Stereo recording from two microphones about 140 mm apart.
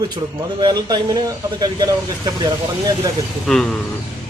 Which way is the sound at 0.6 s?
30° right (ahead or behind).